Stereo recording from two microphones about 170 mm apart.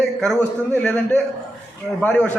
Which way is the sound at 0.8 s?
5° left (ahead or behind).